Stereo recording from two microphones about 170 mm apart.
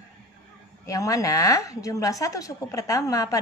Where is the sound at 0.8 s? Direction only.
20° left (ahead or behind).